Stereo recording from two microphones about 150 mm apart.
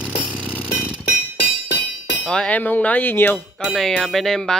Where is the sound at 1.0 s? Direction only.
90° left.